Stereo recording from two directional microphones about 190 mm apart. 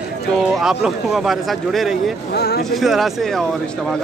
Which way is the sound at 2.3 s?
60° left (ahead or behind).